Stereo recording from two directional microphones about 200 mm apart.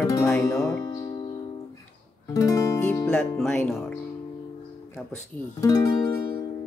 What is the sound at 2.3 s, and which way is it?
Music, 15° left (ahead or behind).